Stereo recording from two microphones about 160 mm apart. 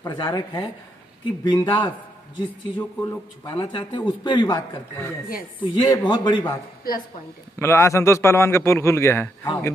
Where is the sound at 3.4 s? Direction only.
30° left (ahead or behind).